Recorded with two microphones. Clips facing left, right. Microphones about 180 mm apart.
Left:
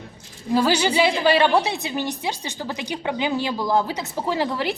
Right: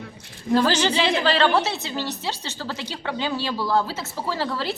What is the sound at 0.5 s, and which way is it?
A woman's voice, 10° left (ahead or behind).